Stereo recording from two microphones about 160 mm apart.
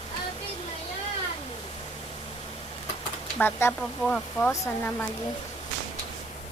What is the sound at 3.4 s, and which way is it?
Speech, 15° left (ahead or behind).